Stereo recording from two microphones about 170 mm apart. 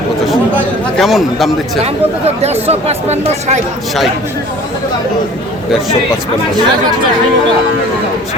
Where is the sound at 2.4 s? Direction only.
40° right (ahead or behind).